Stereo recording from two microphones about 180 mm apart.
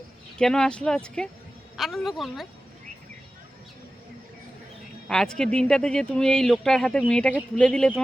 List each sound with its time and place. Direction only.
0.3 s a woman's voice: 5° left (ahead or behind)
5.0 s speech: 5° left (ahead or behind)